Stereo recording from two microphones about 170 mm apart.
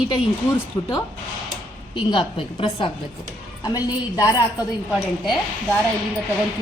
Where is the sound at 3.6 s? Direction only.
20° left (ahead or behind).